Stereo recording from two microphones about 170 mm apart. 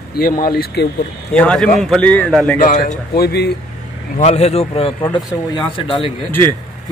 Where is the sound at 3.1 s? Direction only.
70° left (ahead or behind).